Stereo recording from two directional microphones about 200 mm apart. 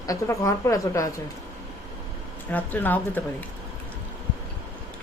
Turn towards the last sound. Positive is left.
turn(degrees=10)  # may be behind; listen again after turning